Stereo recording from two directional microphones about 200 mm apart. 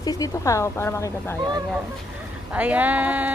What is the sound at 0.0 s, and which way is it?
Speech, 20° left (ahead or behind).